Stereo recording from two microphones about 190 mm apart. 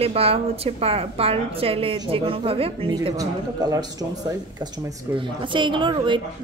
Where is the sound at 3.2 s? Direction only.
20° right (ahead or behind).